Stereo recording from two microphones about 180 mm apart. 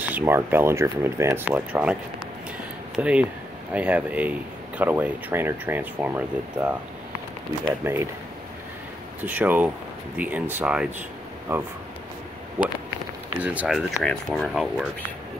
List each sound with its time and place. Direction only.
0.0 s speech: 10° right (ahead or behind)
3.0 s speech: 5° right (ahead or behind)
7.8 s speech: 10° right (ahead or behind)
9.2 s speech: 10° right (ahead or behind)
13.4 s speech: 10° right (ahead or behind)